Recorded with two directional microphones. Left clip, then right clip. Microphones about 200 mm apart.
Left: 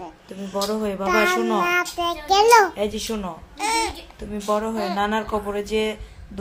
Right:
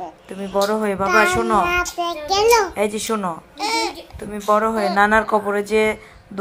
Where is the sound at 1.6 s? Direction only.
20° left (ahead or behind).